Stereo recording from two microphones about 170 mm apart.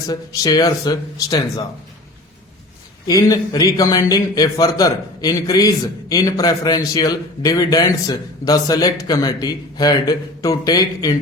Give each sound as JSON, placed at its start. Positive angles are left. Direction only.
{"t": 0.1, "sound": "a man's voice", "side_deg": 20}
{"t": 3.1, "sound": "a man's voice", "side_deg": 20}